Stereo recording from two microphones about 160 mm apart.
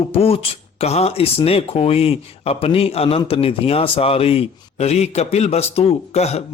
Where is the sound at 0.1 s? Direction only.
35° left (ahead or behind).